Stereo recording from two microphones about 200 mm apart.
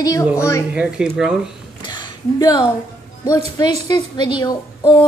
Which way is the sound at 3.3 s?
20° left (ahead or behind).